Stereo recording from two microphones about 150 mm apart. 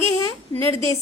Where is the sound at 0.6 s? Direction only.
20° left (ahead or behind).